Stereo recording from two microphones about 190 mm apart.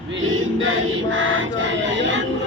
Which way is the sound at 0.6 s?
90° right.